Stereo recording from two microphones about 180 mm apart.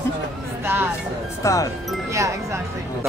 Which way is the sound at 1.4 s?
15° left (ahead or behind).